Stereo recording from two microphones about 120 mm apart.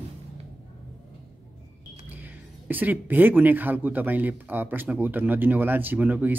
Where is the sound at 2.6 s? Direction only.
15° right (ahead or behind).